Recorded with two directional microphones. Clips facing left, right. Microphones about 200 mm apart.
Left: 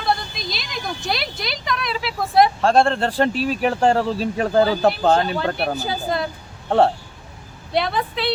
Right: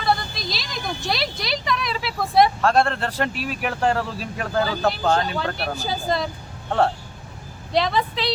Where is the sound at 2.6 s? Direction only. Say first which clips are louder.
Left 3 dB; 30° left (ahead or behind).